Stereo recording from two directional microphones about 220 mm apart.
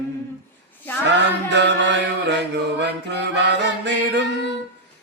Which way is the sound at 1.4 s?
55° right (ahead or behind).